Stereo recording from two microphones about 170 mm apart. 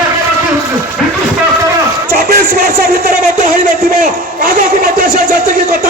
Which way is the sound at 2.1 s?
55° right (ahead or behind).